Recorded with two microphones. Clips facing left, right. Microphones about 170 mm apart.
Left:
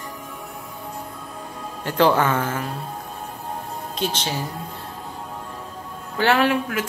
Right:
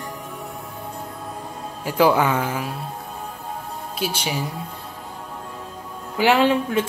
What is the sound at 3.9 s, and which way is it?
Speech, 10° right (ahead or behind).